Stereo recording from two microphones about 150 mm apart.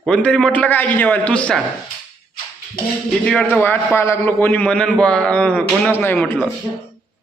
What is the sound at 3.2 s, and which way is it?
A man's voice, 10° left (ahead or behind).